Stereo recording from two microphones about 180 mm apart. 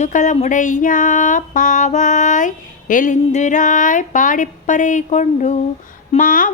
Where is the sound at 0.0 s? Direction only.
45° left (ahead or behind).